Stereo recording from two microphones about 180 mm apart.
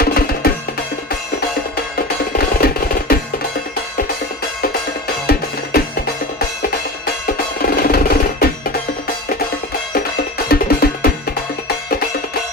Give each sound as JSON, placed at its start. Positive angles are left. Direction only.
{"t": 0.0, "sound": "music", "side_deg": 55}
{"t": 2.6, "sound": "music", "side_deg": 55}
{"t": 5.2, "sound": "music", "side_deg": 60}
{"t": 7.3, "sound": "music", "side_deg": 55}
{"t": 9.9, "sound": "music", "side_deg": 60}